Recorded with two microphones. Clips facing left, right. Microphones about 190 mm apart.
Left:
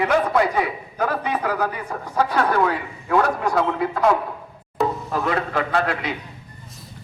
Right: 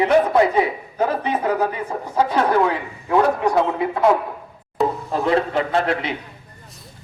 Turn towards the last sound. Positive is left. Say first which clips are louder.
# right 2 dB
turn(degrees=-25)  # may be behind; listen again after turning